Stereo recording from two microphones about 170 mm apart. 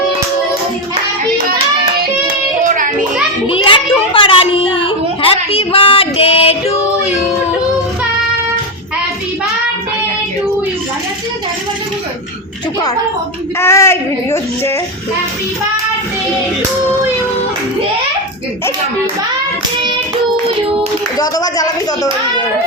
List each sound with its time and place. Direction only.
1.8 s music: 65° right (ahead or behind)
3.5 s a sound: 30° left (ahead or behind)
5.2 s female singing: 35° left (ahead or behind)
13.6 s speech: 15° left (ahead or behind)
21.2 s speech: 20° left (ahead or behind)